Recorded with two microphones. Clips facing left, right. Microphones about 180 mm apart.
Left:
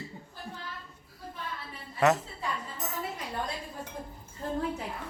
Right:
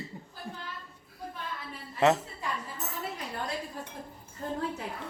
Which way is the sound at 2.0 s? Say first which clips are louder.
Right 1 dB; 25° right (ahead or behind).